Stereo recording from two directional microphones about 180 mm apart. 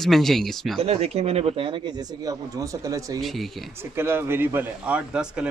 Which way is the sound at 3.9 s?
15° right (ahead or behind).